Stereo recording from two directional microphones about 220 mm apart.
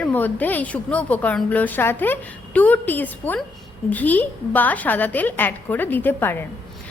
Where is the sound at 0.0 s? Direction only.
5° left (ahead or behind).